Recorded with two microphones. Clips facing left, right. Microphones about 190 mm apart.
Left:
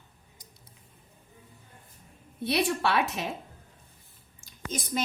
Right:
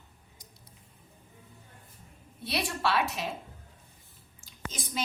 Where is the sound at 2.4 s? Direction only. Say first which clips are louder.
Left 4 dB; 55° left (ahead or behind).